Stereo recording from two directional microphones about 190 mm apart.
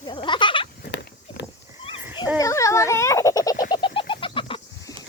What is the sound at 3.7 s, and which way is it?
Bird, 25° left (ahead or behind).